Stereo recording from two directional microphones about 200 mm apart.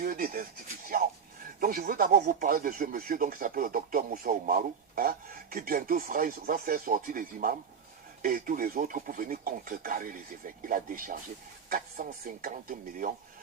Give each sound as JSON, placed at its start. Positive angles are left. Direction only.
{"t": 0.0, "sound": "speech", "side_deg": -45}
{"t": 1.6, "sound": "speech", "side_deg": -45}